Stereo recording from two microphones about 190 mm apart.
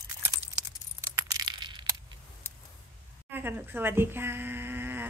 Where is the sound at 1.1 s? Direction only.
20° right (ahead or behind).